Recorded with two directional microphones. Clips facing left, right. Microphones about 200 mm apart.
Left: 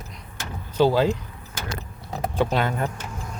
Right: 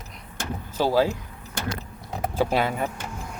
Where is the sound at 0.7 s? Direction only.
10° right (ahead or behind).